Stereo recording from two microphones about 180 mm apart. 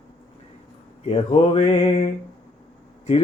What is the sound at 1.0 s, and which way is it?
Speech, 30° left (ahead or behind).